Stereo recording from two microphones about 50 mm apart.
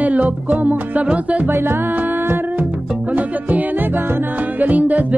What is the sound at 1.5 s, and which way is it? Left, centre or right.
Music, right.